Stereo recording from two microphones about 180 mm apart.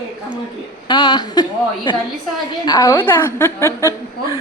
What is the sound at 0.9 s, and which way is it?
A woman's voice, 25° left (ahead or behind).